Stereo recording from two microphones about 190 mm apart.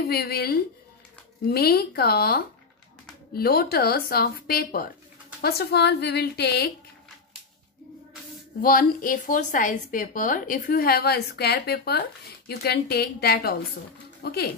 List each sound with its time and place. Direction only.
0.1 s a woman's voice: 55° left (ahead or behind)
8.5 s a woman's voice: 50° left (ahead or behind)